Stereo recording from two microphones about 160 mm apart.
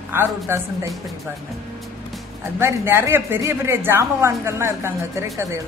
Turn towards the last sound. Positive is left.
turn(degrees=-15)  # may be behind; listen again after turning